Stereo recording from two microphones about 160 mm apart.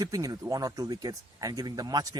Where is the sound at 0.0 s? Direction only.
20° right (ahead or behind).